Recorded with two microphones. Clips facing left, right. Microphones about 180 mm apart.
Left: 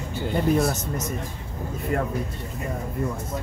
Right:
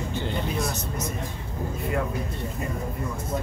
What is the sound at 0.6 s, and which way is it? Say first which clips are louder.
Speech: left 5 dB; 50° left (ahead or behind).